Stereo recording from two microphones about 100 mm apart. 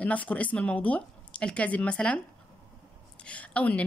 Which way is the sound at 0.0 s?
15° left (ahead or behind).